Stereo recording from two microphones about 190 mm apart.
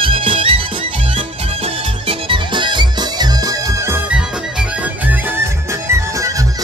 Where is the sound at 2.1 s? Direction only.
25° right (ahead or behind).